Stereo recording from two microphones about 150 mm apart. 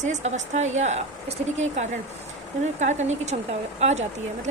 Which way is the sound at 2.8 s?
50° right (ahead or behind).